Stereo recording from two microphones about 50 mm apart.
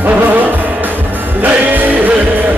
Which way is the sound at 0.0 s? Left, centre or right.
Right.